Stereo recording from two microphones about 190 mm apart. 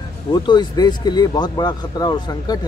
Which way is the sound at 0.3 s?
25° left (ahead or behind).